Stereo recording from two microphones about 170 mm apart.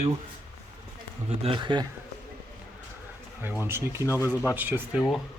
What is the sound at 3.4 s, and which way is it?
Speech, 15° right (ahead or behind).